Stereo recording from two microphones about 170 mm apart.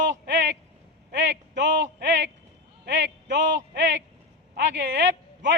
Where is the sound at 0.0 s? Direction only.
90° right.